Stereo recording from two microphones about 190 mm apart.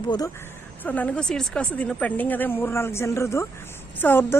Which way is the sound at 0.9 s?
10° left (ahead or behind).